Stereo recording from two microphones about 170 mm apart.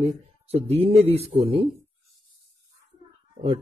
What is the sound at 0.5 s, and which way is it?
Speech, 35° right (ahead or behind).